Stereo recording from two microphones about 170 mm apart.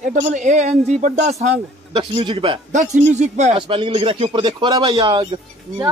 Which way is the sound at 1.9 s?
30° right (ahead or behind).